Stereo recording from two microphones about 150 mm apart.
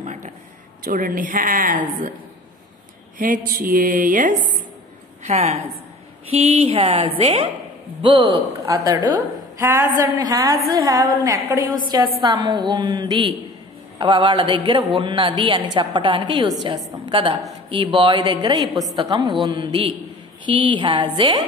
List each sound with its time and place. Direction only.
0.0 s a sound: 50° right (ahead or behind)
0.8 s a woman's voice: 70° right (ahead or behind)
3.2 s a woman's voice: 65° right (ahead or behind)
5.2 s a woman's voice: 45° right (ahead or behind)
8.0 s a woman's voice: 30° right (ahead or behind)